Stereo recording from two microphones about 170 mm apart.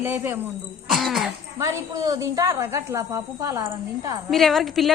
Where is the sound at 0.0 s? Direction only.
15° right (ahead or behind).